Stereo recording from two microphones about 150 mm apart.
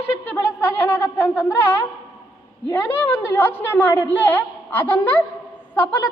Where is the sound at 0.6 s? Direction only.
15° left (ahead or behind).